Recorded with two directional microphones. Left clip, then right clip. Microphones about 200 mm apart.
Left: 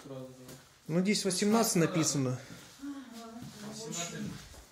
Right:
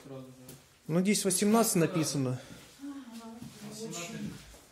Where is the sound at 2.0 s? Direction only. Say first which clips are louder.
Left 1 dB; 5° right (ahead or behind).